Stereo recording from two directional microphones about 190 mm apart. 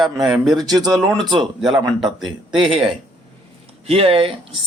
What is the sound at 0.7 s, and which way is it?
Speech, 20° right (ahead or behind).